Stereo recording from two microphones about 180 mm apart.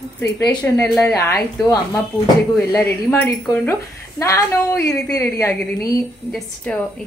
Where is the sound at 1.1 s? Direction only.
15° left (ahead or behind).